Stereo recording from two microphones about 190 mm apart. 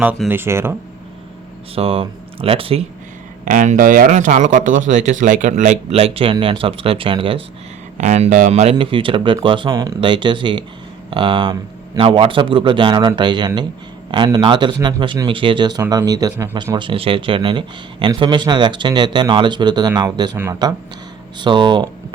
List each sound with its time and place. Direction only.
0.0 s speech: 10° right (ahead or behind)
1.7 s a man's voice: 30° right (ahead or behind)
3.4 s a man's voice: 40° right (ahead or behind); by 21.8 s 25° right (ahead or behind)